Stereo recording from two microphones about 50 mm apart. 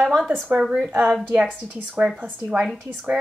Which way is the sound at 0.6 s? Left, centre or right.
Centre.